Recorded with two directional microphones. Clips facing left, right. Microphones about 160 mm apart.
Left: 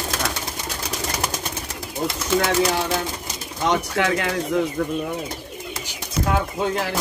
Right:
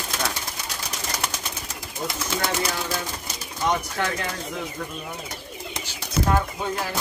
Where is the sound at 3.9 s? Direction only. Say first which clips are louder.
Left 6 dB; 75° left (ahead or behind).